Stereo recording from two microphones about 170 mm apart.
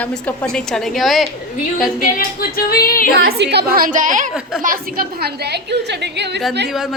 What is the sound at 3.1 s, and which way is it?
A woman's voice, 70° right (ahead or behind).